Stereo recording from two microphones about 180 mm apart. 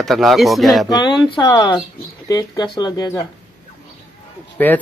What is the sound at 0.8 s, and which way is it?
Speech, 25° left (ahead or behind).